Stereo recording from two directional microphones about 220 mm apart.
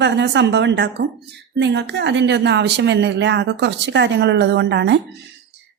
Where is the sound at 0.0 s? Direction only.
50° right (ahead or behind).